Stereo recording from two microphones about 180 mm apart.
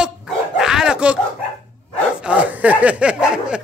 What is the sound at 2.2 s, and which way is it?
Speech, 10° right (ahead or behind).